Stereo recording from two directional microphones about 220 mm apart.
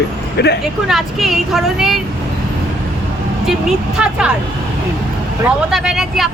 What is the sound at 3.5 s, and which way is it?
Speech, 5° right (ahead or behind).